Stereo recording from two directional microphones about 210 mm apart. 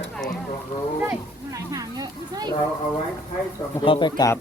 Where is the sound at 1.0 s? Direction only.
10° right (ahead or behind).